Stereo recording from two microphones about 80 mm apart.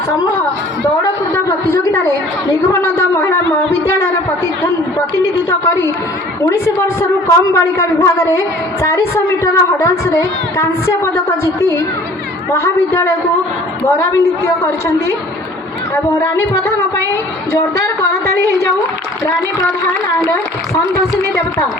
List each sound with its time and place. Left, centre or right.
1.3 s a sound: left
5.5 s a woman's voice: left
20.1 s a woman's voice: left